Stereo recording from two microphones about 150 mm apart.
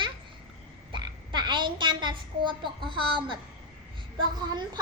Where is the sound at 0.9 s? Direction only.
30° right (ahead or behind).